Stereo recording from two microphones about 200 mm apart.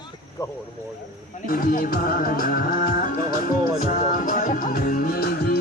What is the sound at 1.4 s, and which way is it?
Music, 45° left (ahead or behind).